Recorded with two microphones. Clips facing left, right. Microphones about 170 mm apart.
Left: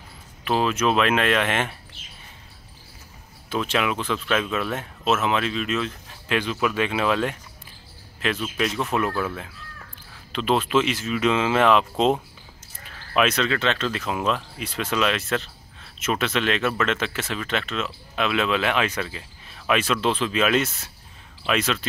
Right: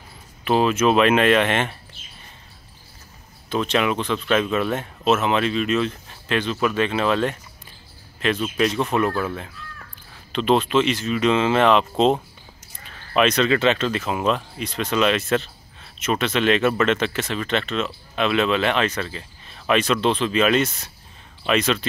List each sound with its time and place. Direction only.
0.5 s speech: centre (ahead or behind)
3.4 s speech: 5° left (ahead or behind)